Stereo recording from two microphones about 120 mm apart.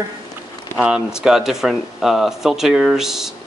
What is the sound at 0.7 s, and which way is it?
Speech, 10° right (ahead or behind).